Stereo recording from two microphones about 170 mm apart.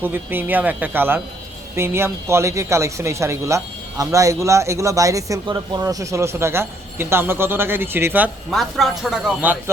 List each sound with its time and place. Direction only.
0.0 s speech: 10° right (ahead or behind)
8.4 s speech: centre (ahead or behind)